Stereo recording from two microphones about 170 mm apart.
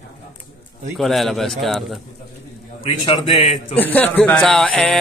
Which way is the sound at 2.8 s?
35° left (ahead or behind).